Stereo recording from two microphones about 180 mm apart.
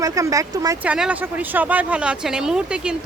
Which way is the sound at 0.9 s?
5° right (ahead or behind).